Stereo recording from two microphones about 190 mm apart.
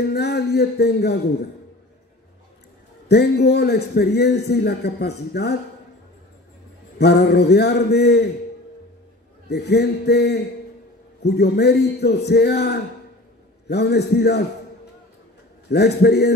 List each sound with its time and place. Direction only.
0.1 s a man's voice: 60° left (ahead or behind)
3.1 s a man's voice: 60° left (ahead or behind)
7.0 s a man's voice: 60° left (ahead or behind)
9.5 s a man's voice: 60° left (ahead or behind)
15.7 s a man's voice: 60° left (ahead or behind)